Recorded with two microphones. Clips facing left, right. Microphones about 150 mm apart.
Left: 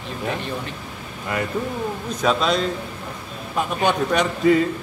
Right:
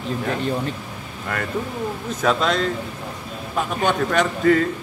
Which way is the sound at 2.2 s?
5° left (ahead or behind).